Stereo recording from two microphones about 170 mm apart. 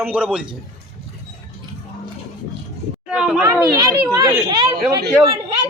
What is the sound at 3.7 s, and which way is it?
A child's voice, 20° right (ahead or behind).